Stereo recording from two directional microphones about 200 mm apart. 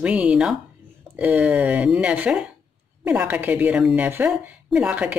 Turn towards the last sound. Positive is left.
turn(degrees=-5)  # may be behind; listen again after turning